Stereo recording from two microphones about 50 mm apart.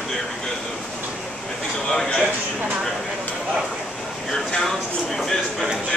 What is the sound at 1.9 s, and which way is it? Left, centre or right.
Speech, centre.